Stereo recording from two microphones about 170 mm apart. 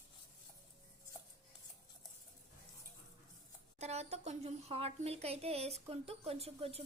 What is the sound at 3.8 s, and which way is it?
A woman's voice, 40° right (ahead or behind).